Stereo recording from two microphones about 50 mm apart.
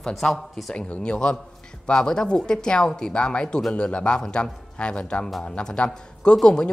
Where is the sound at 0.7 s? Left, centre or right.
Left.